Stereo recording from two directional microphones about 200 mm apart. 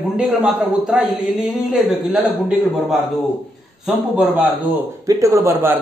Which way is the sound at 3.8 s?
Centre (ahead or behind).